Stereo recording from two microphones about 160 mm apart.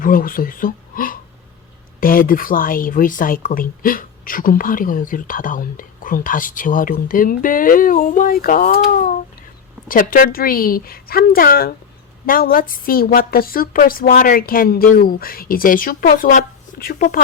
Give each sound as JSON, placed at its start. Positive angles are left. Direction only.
{"t": 0.0, "sound": "a woman's voice", "side_deg": 60}